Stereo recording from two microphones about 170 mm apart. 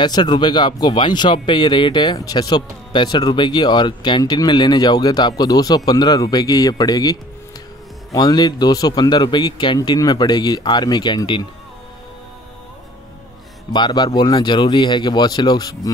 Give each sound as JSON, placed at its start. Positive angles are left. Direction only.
{"t": 0.0, "sound": "speech", "side_deg": 25}
{"t": 13.7, "sound": "speech", "side_deg": 25}